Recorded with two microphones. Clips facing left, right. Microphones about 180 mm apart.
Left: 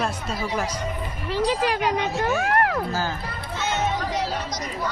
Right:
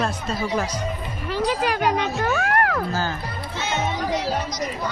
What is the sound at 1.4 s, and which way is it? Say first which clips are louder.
Speech: even; 30° left (ahead or behind).